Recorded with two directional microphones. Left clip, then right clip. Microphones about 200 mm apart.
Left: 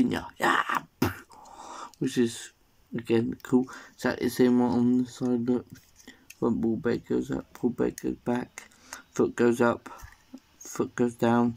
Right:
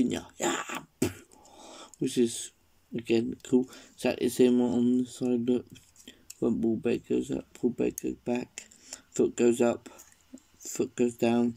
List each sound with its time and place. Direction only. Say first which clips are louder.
0.0 s a sound: left 4 dB; centre (ahead or behind)
3.0 s speech: left 1 dB; 5° right (ahead or behind)
4.9 s speech: left 2 dB; 25° right (ahead or behind)
5.2 s speech: even; 5° right (ahead or behind)